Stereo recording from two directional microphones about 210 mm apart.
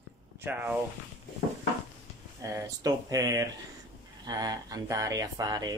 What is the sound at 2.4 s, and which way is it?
Speech, 15° right (ahead or behind).